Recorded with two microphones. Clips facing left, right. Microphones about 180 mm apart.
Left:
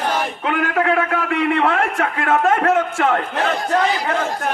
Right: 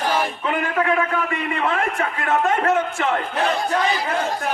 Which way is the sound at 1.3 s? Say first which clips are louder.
Left 6 dB; 65° left (ahead or behind).